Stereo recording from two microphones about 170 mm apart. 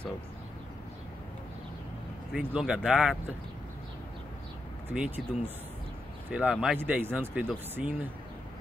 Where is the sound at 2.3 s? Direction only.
5° right (ahead or behind).